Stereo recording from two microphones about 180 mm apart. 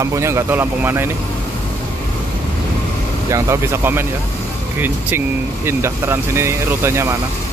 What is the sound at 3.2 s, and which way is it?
Speech, 15° right (ahead or behind).